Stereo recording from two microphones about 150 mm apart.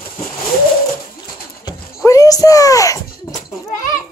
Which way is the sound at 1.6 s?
20° left (ahead or behind).